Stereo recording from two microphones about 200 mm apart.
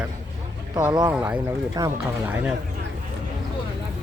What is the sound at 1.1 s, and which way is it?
Speech, 5° right (ahead or behind).